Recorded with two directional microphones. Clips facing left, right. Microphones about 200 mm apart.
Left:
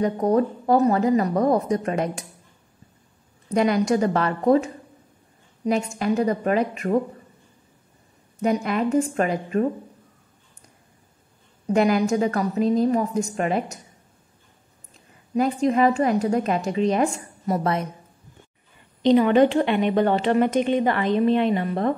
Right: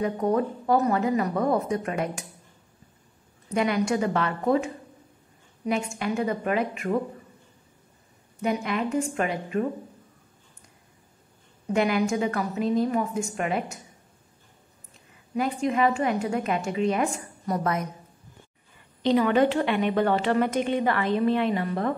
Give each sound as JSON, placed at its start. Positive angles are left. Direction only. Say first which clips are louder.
{"t": 0.0, "sound": "a woman's voice", "louder": "left 4 dB", "side_deg": 35}
{"t": 3.5, "sound": "a woman's voice", "louder": "left 4 dB", "side_deg": 35}
{"t": 5.7, "sound": "a woman's voice", "louder": "left 5 dB", "side_deg": 40}
{"t": 8.4, "sound": "a woman's voice", "louder": "left 4 dB", "side_deg": 40}
{"t": 11.7, "sound": "a woman's voice", "louder": "left 4 dB", "side_deg": 40}
{"t": 15.3, "sound": "a woman's voice", "louder": "left 5 dB", "side_deg": 40}
{"t": 19.0, "sound": "a woman's voice", "louder": "left 5 dB", "side_deg": 25}